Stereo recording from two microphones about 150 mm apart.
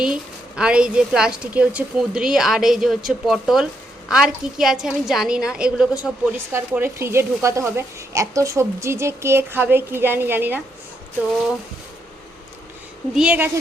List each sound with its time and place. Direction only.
0.0 s a woman's voice: 5° right (ahead or behind)
13.1 s a woman's voice: 10° right (ahead or behind)